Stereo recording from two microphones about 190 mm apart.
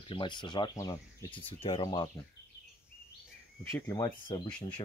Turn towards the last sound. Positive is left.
turn(degrees=25)  # may be behind; listen again after turning